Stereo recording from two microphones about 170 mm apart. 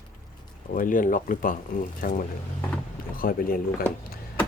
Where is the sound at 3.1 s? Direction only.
55° left (ahead or behind).